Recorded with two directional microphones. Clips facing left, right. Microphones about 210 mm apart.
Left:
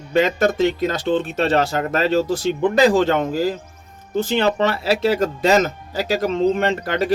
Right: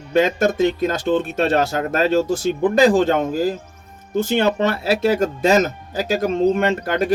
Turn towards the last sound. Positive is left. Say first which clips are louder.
# right 1 dB
turn(degrees=-50)  # may be behind; listen again after turning